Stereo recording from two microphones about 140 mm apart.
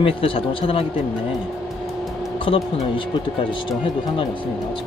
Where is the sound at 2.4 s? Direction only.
40° left (ahead or behind).